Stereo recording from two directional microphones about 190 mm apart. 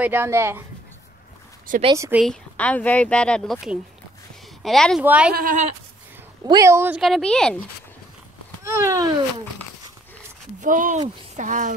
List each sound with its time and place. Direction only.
0.0 s speech: 10° right (ahead or behind)
2.0 s speech: 10° right (ahead or behind)
2.2 s speech: 5° left (ahead or behind)
5.3 s speech: 45° right (ahead or behind)
6.4 s speech: 15° right (ahead or behind)
7.0 s speech: centre (ahead or behind)
8.6 s speech: 15° right (ahead or behind)
10.6 s speech: 45° right (ahead or behind)